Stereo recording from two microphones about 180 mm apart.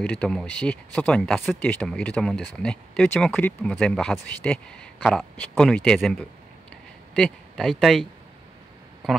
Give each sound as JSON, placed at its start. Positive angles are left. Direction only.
{"t": 0.0, "sound": "speech", "side_deg": 5}